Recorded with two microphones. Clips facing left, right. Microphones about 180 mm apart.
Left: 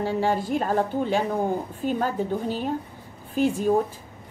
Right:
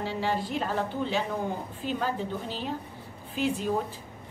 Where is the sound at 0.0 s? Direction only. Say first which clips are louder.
Left 6 dB; 50° left (ahead or behind).